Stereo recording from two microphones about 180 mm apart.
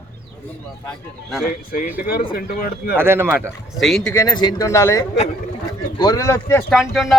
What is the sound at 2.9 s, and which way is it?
Speech, 15° right (ahead or behind).